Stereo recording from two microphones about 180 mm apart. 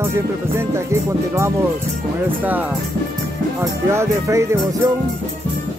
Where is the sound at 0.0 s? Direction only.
15° right (ahead or behind).